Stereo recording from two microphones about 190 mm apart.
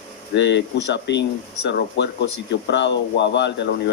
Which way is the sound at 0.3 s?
65° left (ahead or behind).